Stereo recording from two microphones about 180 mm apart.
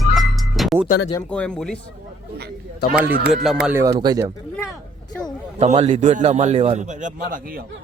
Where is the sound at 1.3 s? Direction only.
5° left (ahead or behind).